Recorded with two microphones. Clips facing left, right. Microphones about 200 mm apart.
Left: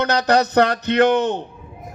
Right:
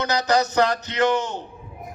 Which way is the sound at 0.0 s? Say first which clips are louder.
Left 4 dB; 60° left (ahead or behind).